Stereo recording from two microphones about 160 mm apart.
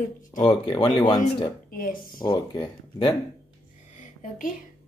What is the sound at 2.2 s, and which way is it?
Speech, 30° left (ahead or behind).